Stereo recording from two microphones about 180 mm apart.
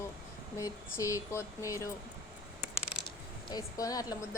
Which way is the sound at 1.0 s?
15° left (ahead or behind).